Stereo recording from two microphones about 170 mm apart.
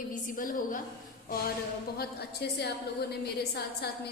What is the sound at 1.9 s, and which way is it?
A woman's voice, 70° left (ahead or behind).